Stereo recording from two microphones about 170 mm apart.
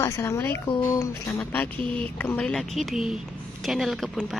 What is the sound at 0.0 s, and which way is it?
Speech, 15° left (ahead or behind).